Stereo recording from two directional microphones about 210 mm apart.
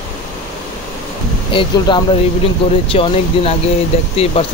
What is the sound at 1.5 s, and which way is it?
Speech, 20° left (ahead or behind).